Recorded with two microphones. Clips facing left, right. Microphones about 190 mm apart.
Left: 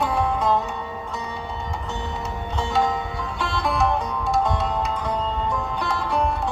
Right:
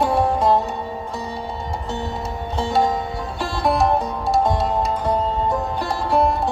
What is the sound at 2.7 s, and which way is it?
Music, 40° right (ahead or behind).